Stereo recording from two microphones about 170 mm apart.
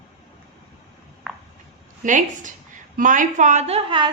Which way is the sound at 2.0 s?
45° right (ahead or behind).